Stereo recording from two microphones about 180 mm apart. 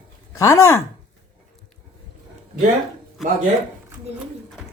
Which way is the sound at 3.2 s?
Centre (ahead or behind).